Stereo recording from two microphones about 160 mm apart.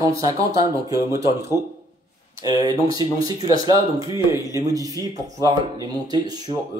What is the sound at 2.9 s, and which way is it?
Speech, 25° right (ahead or behind).